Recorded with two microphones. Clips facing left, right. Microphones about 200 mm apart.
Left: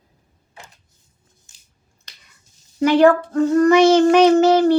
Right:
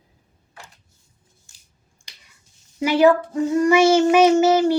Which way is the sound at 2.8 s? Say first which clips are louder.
Left 2 dB; 10° right (ahead or behind).